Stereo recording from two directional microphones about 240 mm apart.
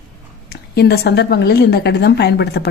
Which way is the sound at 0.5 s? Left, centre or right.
Left.